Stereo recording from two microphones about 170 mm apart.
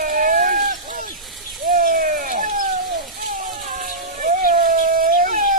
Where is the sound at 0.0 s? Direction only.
55° right (ahead or behind).